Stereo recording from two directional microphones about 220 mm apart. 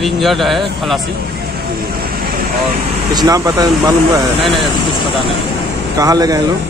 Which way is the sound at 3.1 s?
15° right (ahead or behind).